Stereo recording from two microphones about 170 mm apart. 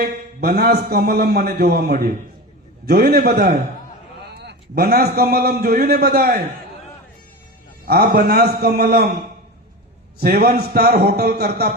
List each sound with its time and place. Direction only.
0.0 s a man's voice: 60° right (ahead or behind)
7.9 s a man's voice: 65° right (ahead or behind)
10.2 s a man's voice: 60° right (ahead or behind)